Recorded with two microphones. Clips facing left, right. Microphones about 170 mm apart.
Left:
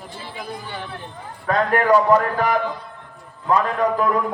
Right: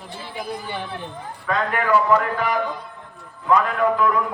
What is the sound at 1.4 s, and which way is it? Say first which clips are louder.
Speech: left 4 dB; 40° left (ahead or behind).